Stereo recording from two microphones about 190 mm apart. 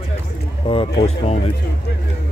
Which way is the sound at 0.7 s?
25° left (ahead or behind).